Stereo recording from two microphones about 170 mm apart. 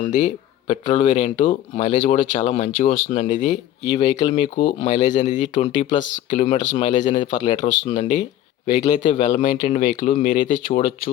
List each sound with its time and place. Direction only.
0.1 s speech: 45° left (ahead or behind)
3.8 s speech: 25° left (ahead or behind)
4.8 s speech: 40° left (ahead or behind)
9.6 s speech: 45° left (ahead or behind)